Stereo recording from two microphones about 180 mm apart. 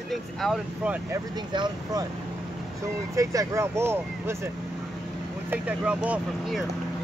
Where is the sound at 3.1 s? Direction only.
20° right (ahead or behind).